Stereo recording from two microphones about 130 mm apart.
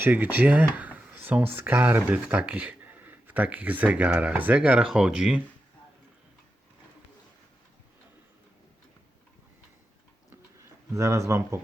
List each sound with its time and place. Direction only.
0.0 s speech: 15° right (ahead or behind)
10.9 s speech: 20° right (ahead or behind)